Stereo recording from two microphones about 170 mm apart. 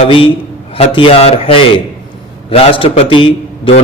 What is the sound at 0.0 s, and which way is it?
Speech, 35° left (ahead or behind).